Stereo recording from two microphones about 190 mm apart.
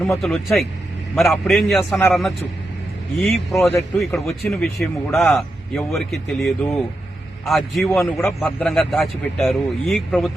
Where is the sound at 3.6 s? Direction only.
10° left (ahead or behind).